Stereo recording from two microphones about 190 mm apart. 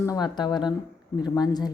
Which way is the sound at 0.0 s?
20° left (ahead or behind).